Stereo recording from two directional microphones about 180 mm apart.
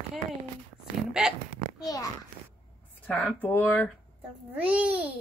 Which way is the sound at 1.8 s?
20° left (ahead or behind).